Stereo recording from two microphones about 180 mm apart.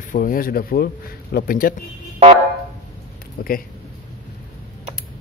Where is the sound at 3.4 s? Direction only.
55° left (ahead or behind).